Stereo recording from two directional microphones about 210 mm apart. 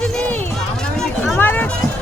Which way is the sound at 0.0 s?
5° left (ahead or behind).